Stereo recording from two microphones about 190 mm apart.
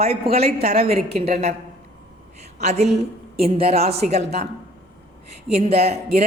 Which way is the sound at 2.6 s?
35° right (ahead or behind).